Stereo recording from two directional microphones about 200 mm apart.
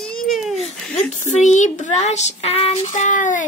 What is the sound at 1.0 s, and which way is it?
Speech, 35° left (ahead or behind).